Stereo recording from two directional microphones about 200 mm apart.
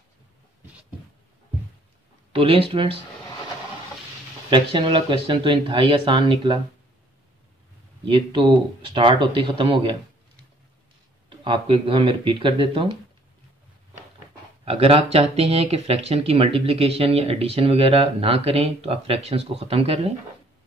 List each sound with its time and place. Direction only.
2.3 s speech: 25° right (ahead or behind)
4.5 s speech: 25° right (ahead or behind)
8.0 s speech: 25° right (ahead or behind)
11.2 s speech: 25° right (ahead or behind)
14.6 s speech: 30° right (ahead or behind)